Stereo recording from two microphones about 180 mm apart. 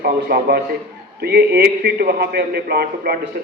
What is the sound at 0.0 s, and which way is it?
A man's voice, 60° right (ahead or behind).